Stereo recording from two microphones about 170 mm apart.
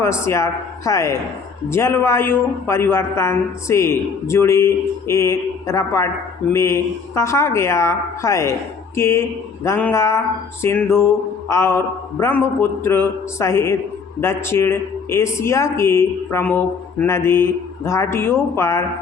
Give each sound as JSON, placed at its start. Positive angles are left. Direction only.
{"t": 0.0, "sound": "speech", "side_deg": 15}